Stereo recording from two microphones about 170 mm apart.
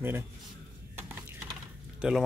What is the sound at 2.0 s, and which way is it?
Speech, 5° right (ahead or behind).